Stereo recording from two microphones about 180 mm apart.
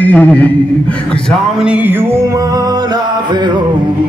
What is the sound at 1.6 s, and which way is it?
Music, 10° right (ahead or behind).